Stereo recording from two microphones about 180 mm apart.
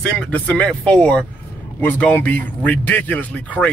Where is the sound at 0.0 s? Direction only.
10° left (ahead or behind).